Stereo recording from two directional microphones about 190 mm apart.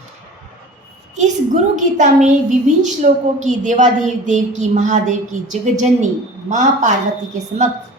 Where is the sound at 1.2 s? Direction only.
40° right (ahead or behind).